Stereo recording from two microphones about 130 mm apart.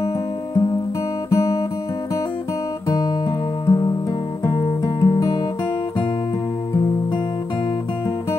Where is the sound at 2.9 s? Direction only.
30° left (ahead or behind).